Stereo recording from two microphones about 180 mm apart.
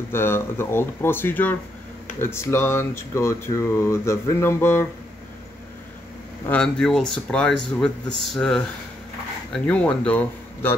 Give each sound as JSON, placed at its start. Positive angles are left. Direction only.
{"t": 0.1, "sound": "speech", "side_deg": 15}
{"t": 6.4, "sound": "speech", "side_deg": 5}